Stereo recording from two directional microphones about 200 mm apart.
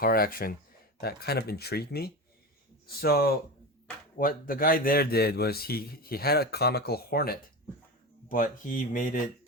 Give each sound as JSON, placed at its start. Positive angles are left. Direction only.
{"t": 0.0, "sound": "a man's voice", "side_deg": 45}